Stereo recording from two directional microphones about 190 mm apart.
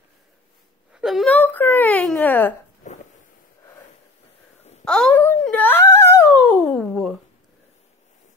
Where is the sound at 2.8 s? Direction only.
40° left (ahead or behind).